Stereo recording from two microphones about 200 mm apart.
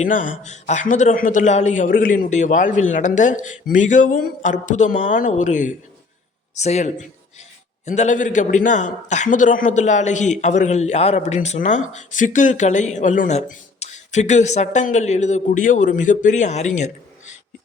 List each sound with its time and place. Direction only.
0.0 s a man's voice: 40° left (ahead or behind)